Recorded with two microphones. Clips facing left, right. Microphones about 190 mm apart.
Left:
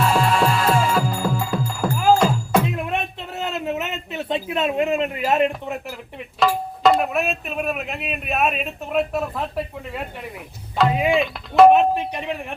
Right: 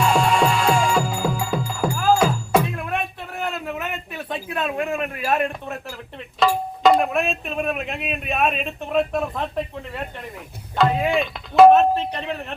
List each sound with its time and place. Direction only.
0.0 s music: centre (ahead or behind)
2.7 s a sound: 20° left (ahead or behind)
5.6 s a man's voice: 15° left (ahead or behind)
6.8 s speech: 5° left (ahead or behind)
11.1 s speech: centre (ahead or behind)
11.7 s a man's voice: 15° left (ahead or behind)